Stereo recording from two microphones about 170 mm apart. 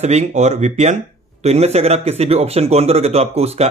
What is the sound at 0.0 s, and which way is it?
Speech, 45° right (ahead or behind).